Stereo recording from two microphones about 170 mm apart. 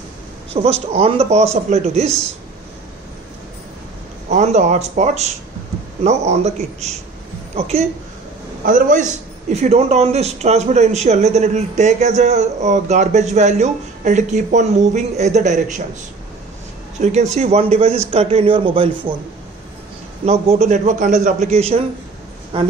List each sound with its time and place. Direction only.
0.5 s a man's voice: 35° right (ahead or behind)
4.3 s a man's voice: 40° right (ahead or behind)
8.6 s a man's voice: 50° right (ahead or behind)
17.0 s a man's voice: 40° right (ahead or behind)
20.2 s a man's voice: 40° right (ahead or behind)